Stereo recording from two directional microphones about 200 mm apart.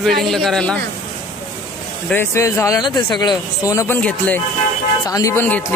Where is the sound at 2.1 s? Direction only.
10° left (ahead or behind).